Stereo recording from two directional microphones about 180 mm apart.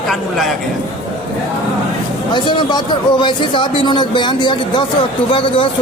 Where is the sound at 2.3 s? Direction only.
25° left (ahead or behind).